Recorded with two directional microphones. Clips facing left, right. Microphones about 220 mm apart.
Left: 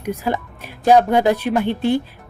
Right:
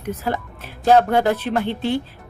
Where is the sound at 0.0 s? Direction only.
15° left (ahead or behind).